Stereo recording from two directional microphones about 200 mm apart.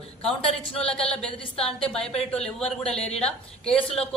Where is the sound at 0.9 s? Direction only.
5° left (ahead or behind).